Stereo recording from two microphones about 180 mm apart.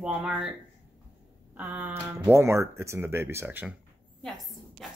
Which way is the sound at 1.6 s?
10° right (ahead or behind).